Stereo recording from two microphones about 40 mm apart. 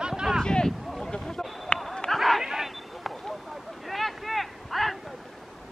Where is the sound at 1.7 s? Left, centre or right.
Left.